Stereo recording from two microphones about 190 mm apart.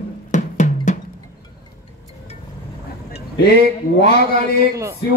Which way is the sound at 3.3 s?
55° left (ahead or behind).